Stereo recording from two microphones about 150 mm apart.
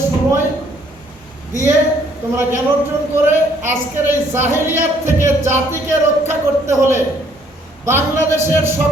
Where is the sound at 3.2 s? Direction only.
15° right (ahead or behind).